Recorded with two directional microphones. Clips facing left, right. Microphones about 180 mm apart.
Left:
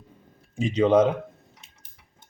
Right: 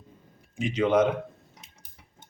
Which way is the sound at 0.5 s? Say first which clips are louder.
Left 4 dB; 30° left (ahead or behind).